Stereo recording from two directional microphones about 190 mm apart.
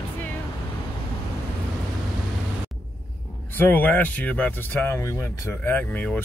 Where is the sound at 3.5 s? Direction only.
10° left (ahead or behind).